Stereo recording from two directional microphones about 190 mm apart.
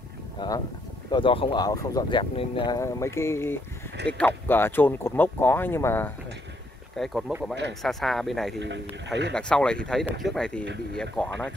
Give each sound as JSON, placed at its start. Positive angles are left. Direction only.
{"t": 0.4, "sound": "speech", "side_deg": 25}
{"t": 7.0, "sound": "speech", "side_deg": -5}
{"t": 8.5, "sound": "speech", "side_deg": -70}
{"t": 9.3, "sound": "speech", "side_deg": 5}